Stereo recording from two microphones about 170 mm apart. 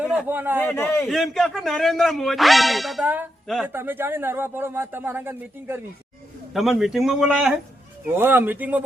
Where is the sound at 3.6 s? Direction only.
10° right (ahead or behind).